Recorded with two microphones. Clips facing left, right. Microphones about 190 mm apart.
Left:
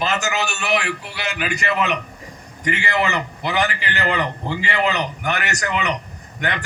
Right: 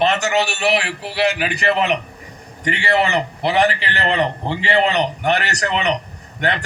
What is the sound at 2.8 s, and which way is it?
A man's voice, 35° right (ahead or behind).